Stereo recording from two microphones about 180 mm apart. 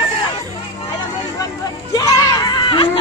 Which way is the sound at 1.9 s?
20° left (ahead or behind).